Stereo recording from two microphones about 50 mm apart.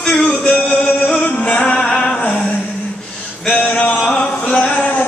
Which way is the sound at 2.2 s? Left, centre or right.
Left.